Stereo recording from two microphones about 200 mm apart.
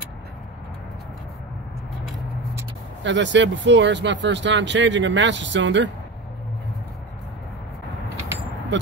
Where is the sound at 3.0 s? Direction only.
65° right (ahead or behind).